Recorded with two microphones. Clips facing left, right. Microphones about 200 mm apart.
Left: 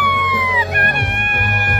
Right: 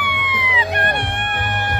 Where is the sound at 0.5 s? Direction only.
25° right (ahead or behind).